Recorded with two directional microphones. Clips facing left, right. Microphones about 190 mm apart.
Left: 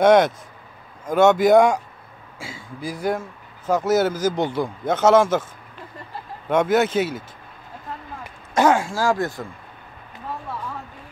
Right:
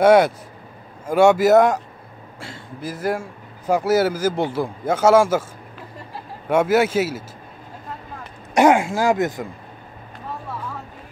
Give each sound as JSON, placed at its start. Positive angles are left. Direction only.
{"t": 0.0, "sound": "speech", "side_deg": -5}
{"t": 6.5, "sound": "speech", "side_deg": -5}
{"t": 8.5, "sound": "speech", "side_deg": -20}